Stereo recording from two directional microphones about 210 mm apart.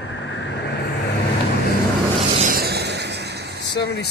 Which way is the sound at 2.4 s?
45° right (ahead or behind).